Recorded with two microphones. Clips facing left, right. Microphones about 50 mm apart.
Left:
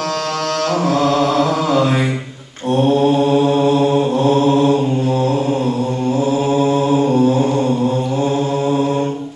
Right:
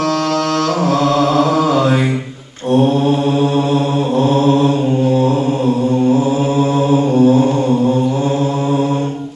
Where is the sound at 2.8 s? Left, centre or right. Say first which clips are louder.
Left 3 dB; right.